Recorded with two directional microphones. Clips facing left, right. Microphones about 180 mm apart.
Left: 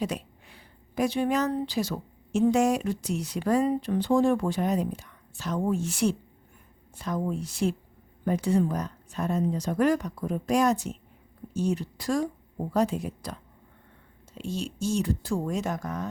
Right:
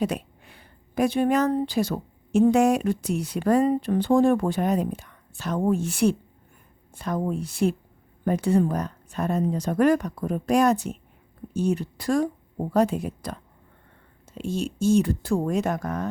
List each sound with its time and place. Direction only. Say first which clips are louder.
0.0 s speech: right 4 dB; 55° right (ahead or behind)